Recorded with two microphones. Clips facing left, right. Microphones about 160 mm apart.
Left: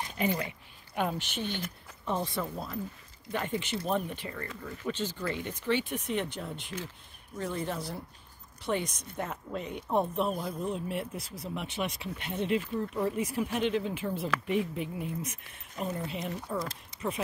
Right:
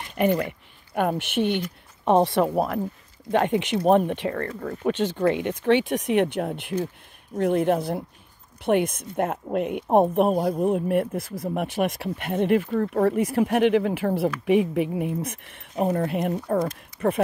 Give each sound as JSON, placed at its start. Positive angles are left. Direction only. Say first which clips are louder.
{"t": 0.2, "sound": "speech", "louder": "right 10 dB", "side_deg": -60}
{"t": 2.0, "sound": "speech", "louder": "right 13 dB", "side_deg": -75}
{"t": 3.3, "sound": "speech", "louder": "right 11 dB", "side_deg": -75}
{"t": 16.9, "sound": "a sound", "louder": "right 11 dB", "side_deg": 25}